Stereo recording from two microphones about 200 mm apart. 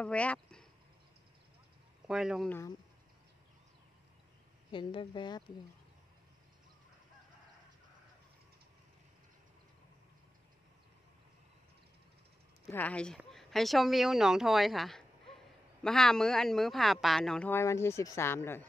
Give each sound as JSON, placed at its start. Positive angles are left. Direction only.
{"t": 0.0, "sound": "speech", "side_deg": 5}
{"t": 2.0, "sound": "speech", "side_deg": -5}
{"t": 4.6, "sound": "speech", "side_deg": 25}
{"t": 12.6, "sound": "speech", "side_deg": 10}